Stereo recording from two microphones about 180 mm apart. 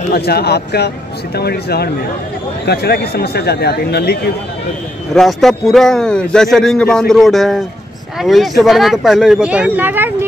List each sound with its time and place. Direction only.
0.1 s speech: 60° left (ahead or behind)
5.1 s a man's voice: centre (ahead or behind)